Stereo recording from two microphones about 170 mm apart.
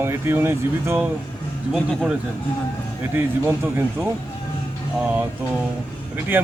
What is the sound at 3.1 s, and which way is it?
Speech, 15° right (ahead or behind).